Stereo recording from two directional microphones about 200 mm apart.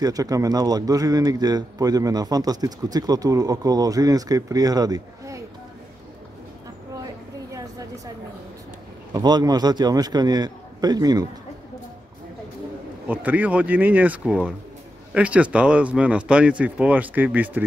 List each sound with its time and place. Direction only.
0.0 s a man's voice: 20° right (ahead or behind)
9.1 s a man's voice: 20° right (ahead or behind)
13.1 s speech: 10° right (ahead or behind)